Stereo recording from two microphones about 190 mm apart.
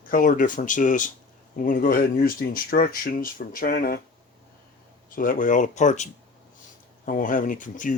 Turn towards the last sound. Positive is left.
turn(degrees=45)  # may be behind; listen again after turning